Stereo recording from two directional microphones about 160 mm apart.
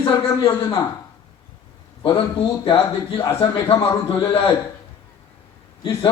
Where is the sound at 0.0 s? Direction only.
30° left (ahead or behind).